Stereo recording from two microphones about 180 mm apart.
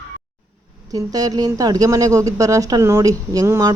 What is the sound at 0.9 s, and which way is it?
A woman's voice, 20° right (ahead or behind).